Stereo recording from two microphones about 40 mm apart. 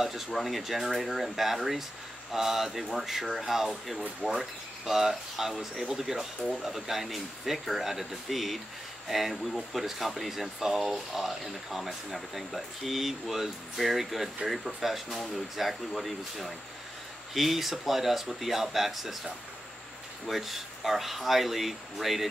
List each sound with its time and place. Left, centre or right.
0.0 s speech: centre